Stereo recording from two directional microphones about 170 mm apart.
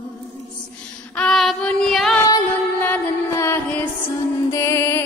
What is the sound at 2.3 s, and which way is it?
Music, 25° left (ahead or behind).